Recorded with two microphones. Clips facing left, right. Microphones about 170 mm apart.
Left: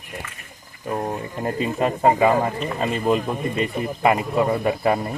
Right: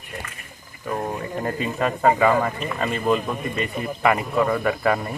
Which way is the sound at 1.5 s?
25° left (ahead or behind).